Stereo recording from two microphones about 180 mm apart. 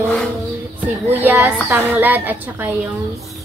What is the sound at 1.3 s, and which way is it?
A woman's voice, 15° right (ahead or behind).